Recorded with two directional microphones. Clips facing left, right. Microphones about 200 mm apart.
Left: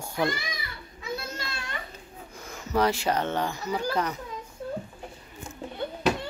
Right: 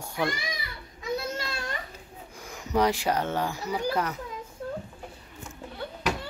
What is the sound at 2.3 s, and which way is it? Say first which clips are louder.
Speech: even; 15° right (ahead or behind).